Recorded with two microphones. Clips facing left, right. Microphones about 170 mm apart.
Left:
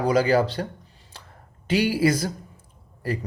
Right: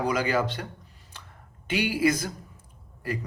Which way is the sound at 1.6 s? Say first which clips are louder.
Left 4 dB; 35° left (ahead or behind).